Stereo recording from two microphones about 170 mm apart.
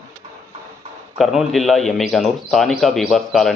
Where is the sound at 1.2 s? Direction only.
Centre (ahead or behind).